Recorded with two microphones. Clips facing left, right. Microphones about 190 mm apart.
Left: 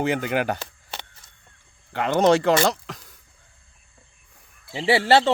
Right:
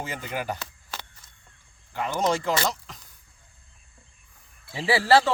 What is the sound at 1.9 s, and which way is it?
Speech, 70° left (ahead or behind).